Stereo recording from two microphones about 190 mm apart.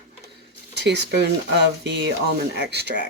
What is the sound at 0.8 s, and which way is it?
Speech, 65° right (ahead or behind).